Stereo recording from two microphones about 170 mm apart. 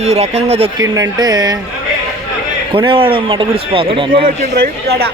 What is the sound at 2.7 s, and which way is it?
Speech, 30° right (ahead or behind).